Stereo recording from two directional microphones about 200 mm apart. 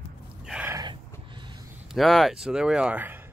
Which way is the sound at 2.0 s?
Centre (ahead or behind).